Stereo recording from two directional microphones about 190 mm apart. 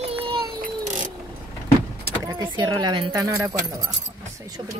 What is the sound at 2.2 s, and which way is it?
Speech, 20° right (ahead or behind).